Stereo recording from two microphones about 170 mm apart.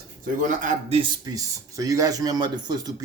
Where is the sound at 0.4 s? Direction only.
50° right (ahead or behind).